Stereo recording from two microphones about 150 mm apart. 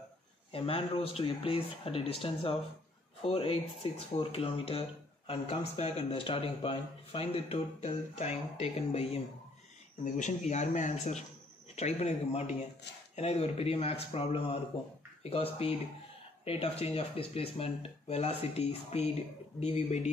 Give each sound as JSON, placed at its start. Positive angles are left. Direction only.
{"t": 0.5, "sound": "speech", "side_deg": 40}
{"t": 3.2, "sound": "speech", "side_deg": 40}
{"t": 10.0, "sound": "speech", "side_deg": 55}